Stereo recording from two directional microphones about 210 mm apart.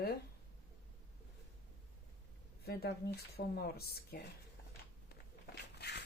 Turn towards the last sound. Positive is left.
turn(degrees=50)  # may be behind; listen again after turning